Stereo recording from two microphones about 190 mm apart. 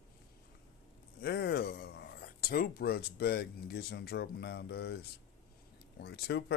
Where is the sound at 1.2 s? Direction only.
60° left (ahead or behind).